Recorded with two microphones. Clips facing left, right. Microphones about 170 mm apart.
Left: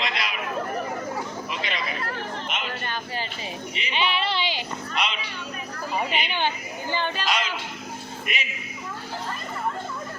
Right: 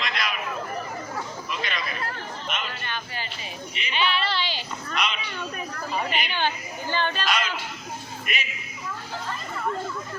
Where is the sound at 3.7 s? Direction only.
20° left (ahead or behind).